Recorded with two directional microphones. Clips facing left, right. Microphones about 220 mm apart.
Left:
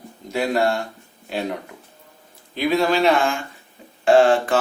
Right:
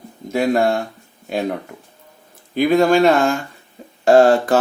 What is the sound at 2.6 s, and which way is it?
A man's voice, 50° right (ahead or behind).